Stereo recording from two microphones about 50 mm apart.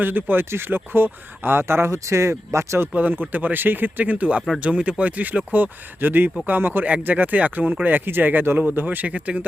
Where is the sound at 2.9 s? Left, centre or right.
Right.